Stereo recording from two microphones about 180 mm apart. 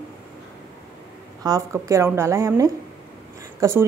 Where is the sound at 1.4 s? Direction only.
20° right (ahead or behind).